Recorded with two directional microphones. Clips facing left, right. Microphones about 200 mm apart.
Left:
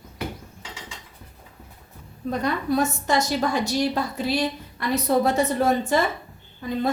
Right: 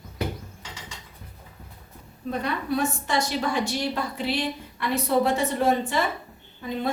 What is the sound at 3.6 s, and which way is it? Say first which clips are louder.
A woman's voice: left 4 dB; 40° left (ahead or behind).